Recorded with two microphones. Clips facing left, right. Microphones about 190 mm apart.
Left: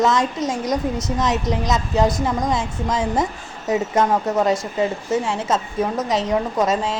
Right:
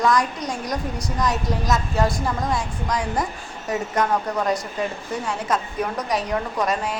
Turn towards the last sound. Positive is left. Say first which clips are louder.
# left 4 dB
turn(degrees=20)  # may be behind; listen again after turning